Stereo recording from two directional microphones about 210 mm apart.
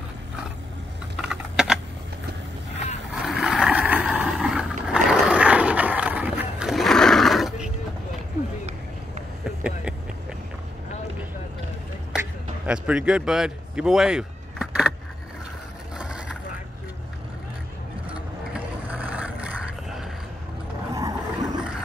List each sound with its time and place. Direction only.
1.1 s typing: centre (ahead or behind)
3.2 s a sound: centre (ahead or behind)
9.6 s vehicle: 5° right (ahead or behind)
12.6 s a sound: 5° right (ahead or behind)
16.0 s vehicle: 5° right (ahead or behind)
18.0 s vehicle: 5° right (ahead or behind)
20.9 s vehicle: 20° right (ahead or behind)